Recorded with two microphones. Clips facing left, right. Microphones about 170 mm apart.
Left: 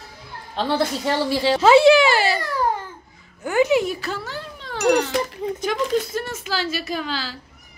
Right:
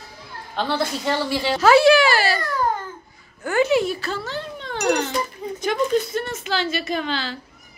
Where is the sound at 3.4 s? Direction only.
15° left (ahead or behind).